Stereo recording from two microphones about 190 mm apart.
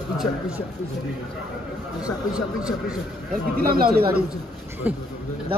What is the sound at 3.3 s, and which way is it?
Speech, 50° right (ahead or behind).